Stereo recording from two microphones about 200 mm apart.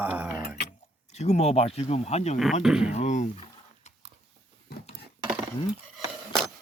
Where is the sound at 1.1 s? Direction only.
35° left (ahead or behind).